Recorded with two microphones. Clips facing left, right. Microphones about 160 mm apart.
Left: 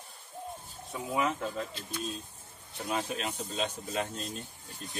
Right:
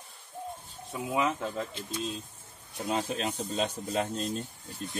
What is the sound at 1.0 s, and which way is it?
Speech, 20° right (ahead or behind).